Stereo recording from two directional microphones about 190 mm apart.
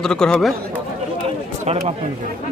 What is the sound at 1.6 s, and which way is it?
Speech, 35° right (ahead or behind).